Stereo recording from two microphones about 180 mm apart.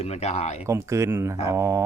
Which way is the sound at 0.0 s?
35° left (ahead or behind).